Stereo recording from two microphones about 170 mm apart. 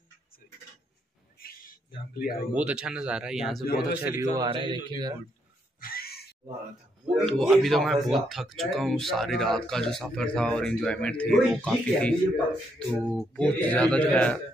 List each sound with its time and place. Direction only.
1.4 s a sound: 60° left (ahead or behind)
2.1 s speech: 60° left (ahead or behind)
2.5 s speech: 5° right (ahead or behind)
3.6 s speech: 65° left (ahead or behind)
4.0 s speech: 20° right (ahead or behind)
5.8 s a sound: 60° left (ahead or behind)
7.2 s speech: centre (ahead or behind)